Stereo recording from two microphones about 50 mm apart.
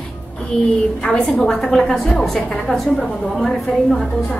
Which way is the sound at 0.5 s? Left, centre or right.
Centre.